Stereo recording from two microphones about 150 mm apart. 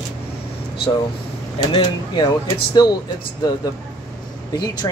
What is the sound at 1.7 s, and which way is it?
Speech, 30° left (ahead or behind).